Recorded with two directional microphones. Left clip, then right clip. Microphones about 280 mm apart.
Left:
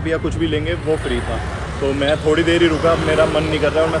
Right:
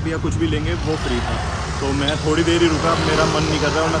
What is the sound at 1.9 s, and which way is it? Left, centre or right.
Speech, centre.